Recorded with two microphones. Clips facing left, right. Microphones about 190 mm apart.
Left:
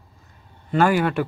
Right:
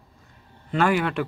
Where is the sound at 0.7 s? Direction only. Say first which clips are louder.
Left 3 dB; centre (ahead or behind).